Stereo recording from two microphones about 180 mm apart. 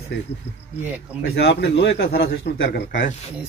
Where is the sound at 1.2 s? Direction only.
70° left (ahead or behind).